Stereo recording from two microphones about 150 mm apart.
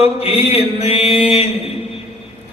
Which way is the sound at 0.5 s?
40° left (ahead or behind).